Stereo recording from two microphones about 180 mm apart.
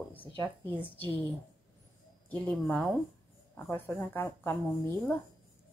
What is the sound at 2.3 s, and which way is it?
A woman's voice, 5° left (ahead or behind).